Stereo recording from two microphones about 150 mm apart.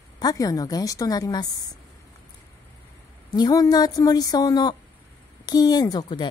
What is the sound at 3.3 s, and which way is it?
Speech, 25° left (ahead or behind).